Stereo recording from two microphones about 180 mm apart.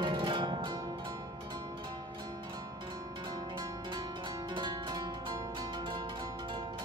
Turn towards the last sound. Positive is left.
turn(degrees=-25)  # may be behind; listen again after turning